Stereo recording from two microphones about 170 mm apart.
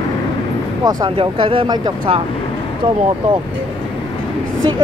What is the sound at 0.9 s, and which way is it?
Speech, 25° right (ahead or behind).